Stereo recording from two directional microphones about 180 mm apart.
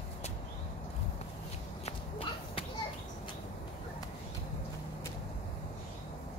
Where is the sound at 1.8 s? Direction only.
30° left (ahead or behind).